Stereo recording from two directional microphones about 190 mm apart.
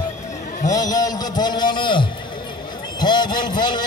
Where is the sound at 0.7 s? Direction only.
20° left (ahead or behind).